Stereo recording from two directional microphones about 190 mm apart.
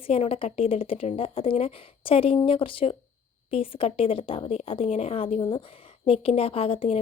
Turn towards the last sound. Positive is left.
turn(degrees=30)  # may be behind; listen again after turning